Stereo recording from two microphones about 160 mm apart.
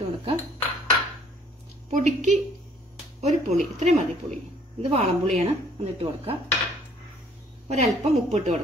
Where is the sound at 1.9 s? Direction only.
50° right (ahead or behind).